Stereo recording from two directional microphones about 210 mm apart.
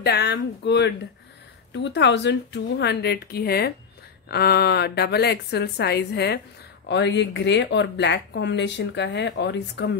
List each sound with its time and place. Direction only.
0.0 s a woman's voice: 55° left (ahead or behind)